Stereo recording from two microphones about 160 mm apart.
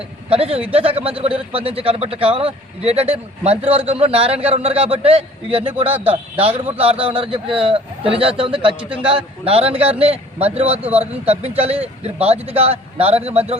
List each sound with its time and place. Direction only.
0.3 s a man's voice: 35° right (ahead or behind)